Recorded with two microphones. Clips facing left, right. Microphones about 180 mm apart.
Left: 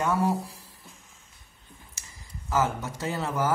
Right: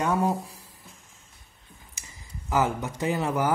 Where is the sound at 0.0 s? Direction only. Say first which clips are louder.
Right 1 dB; 15° right (ahead or behind).